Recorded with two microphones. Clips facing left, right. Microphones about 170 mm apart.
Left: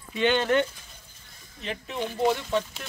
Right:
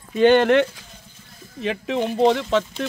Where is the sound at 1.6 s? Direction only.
90° right.